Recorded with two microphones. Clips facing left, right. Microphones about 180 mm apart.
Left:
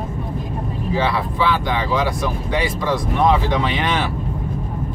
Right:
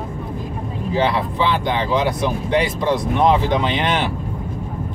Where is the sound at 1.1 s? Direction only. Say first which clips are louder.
Even; 20° right (ahead or behind).